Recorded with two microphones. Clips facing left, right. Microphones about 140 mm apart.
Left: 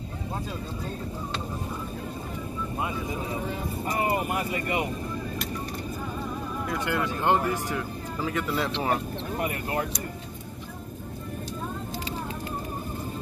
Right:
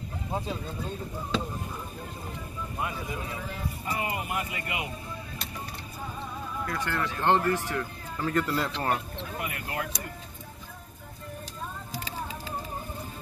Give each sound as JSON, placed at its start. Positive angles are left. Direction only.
{"t": 3.3, "sound": "speech", "side_deg": 40}
{"t": 6.6, "sound": "speech", "side_deg": 15}
{"t": 9.4, "sound": "speech", "side_deg": 35}